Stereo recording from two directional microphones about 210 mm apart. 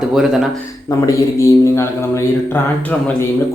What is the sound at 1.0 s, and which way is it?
A man's voice, 15° left (ahead or behind).